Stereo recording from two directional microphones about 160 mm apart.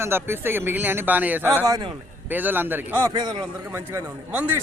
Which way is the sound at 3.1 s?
25° right (ahead or behind).